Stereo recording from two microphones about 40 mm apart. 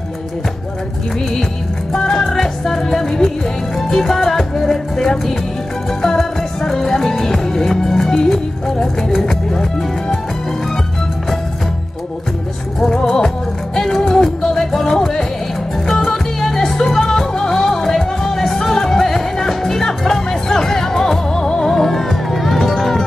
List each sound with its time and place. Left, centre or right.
1.9 s music: centre
12.8 s music: centre